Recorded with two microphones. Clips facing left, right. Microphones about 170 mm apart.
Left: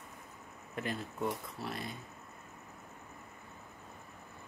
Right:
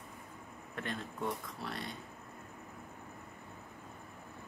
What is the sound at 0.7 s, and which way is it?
Speech, 5° left (ahead or behind).